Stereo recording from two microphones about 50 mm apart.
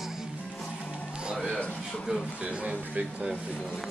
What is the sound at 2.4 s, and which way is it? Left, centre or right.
Speech, right.